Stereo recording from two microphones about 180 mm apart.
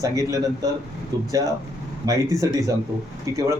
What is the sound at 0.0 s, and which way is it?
Speech, 20° right (ahead or behind).